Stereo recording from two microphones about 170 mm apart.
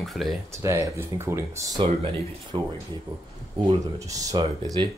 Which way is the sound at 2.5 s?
30° right (ahead or behind).